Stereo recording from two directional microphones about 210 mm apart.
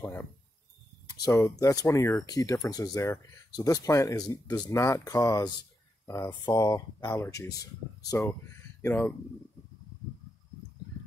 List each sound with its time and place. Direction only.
0.0 s speech: 10° left (ahead or behind)